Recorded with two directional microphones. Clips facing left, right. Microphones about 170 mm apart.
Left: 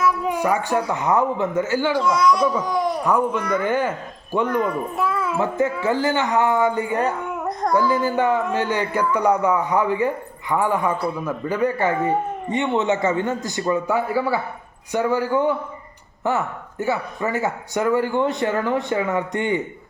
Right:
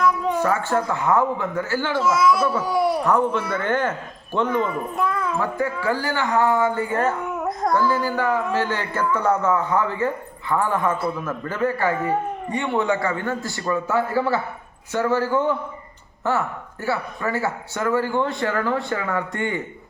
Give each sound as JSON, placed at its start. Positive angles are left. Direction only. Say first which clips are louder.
{"t": 0.0, "sound": "speech", "louder": "even", "side_deg": 10}
{"t": 2.0, "sound": "a child's voice", "louder": "right 1 dB", "side_deg": -5}
{"t": 3.0, "sound": "a man's voice", "louder": "even", "side_deg": 10}
{"t": 4.7, "sound": "a sound", "louder": "left 1 dB", "side_deg": 5}
{"t": 5.4, "sound": "a man's voice", "louder": "left 3 dB", "side_deg": 20}